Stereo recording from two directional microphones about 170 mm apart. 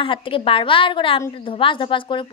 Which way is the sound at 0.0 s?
30° left (ahead or behind).